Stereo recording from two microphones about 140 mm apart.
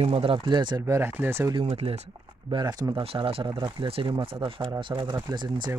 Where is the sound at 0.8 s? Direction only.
20° right (ahead or behind).